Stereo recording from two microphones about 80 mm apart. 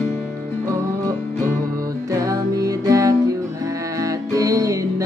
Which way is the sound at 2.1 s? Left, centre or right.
Right.